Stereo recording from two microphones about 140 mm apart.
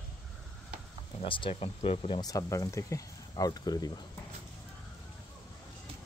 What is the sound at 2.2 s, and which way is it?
Speech, 25° left (ahead or behind).